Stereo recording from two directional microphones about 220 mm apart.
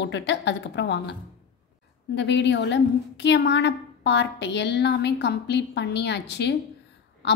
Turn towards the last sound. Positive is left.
turn(degrees=55)  # may be behind; listen again after turning